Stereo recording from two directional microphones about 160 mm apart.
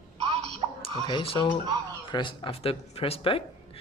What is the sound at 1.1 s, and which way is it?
Speech, 30° left (ahead or behind).